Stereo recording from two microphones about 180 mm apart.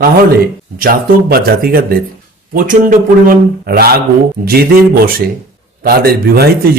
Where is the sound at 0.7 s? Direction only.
55° right (ahead or behind).